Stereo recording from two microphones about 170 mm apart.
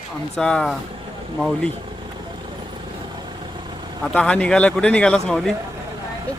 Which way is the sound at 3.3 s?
25° right (ahead or behind).